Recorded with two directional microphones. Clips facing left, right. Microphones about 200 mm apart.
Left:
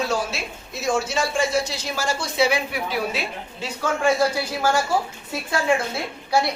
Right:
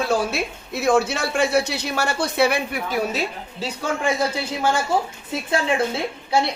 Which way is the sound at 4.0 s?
20° right (ahead or behind).